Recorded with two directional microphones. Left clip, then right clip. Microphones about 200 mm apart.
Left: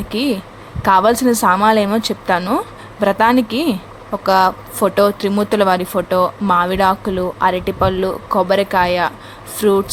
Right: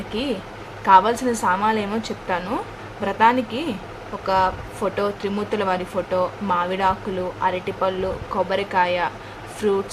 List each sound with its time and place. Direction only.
0.1 s speech: 35° left (ahead or behind)